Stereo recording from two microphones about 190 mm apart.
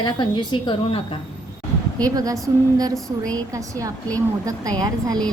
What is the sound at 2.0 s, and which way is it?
A woman's voice, 20° right (ahead or behind).